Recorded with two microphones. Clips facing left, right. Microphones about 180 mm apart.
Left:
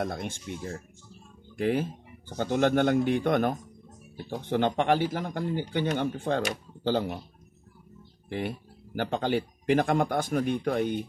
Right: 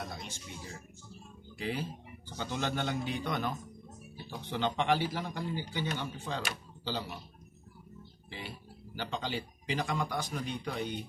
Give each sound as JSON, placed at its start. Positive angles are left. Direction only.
{"t": 0.0, "sound": "speech", "side_deg": 55}
{"t": 8.3, "sound": "speech", "side_deg": 55}